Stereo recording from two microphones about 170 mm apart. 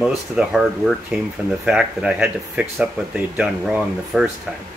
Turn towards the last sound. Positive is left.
turn(degrees=-5)  # may be behind; listen again after turning